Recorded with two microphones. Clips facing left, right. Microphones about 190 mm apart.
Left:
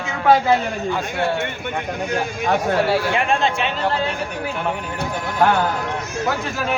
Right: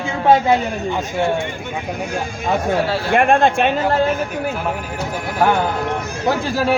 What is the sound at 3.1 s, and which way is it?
Speech, 55° right (ahead or behind).